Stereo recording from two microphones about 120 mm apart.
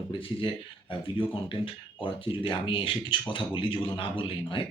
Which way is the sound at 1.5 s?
45° left (ahead or behind).